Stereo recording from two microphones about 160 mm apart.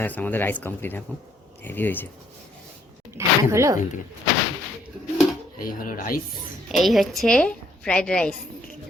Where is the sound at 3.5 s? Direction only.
20° right (ahead or behind).